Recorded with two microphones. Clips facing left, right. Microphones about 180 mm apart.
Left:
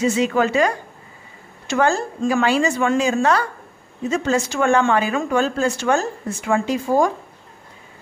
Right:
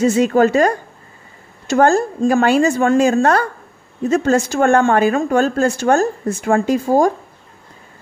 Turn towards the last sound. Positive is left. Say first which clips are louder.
# right 4 dB
turn(degrees=-40)  # may be behind; listen again after turning